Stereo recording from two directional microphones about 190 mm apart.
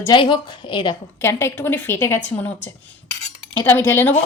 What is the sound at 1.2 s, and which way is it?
A woman's voice, 15° left (ahead or behind).